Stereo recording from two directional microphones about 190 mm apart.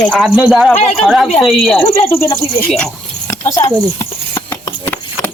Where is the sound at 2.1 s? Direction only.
15° left (ahead or behind).